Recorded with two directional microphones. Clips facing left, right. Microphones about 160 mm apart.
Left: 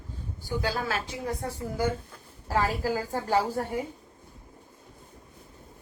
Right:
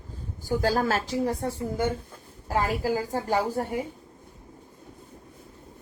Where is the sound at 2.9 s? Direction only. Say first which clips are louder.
Right 1 dB; 15° right (ahead or behind).